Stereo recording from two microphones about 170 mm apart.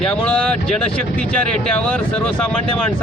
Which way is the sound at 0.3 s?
5° left (ahead or behind).